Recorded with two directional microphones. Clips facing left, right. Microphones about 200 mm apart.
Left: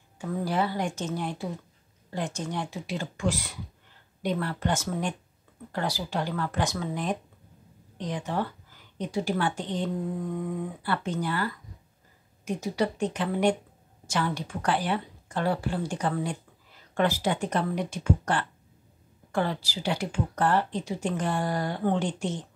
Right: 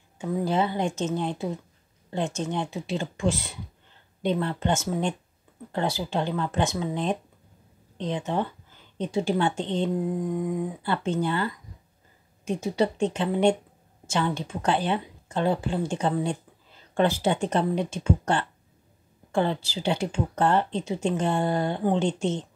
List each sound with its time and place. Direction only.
0.2 s speech: 20° right (ahead or behind)